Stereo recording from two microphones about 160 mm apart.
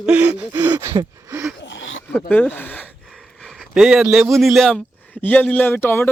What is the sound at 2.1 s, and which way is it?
Speech, 10° left (ahead or behind).